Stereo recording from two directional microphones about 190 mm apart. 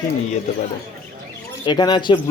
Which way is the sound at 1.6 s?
25° left (ahead or behind).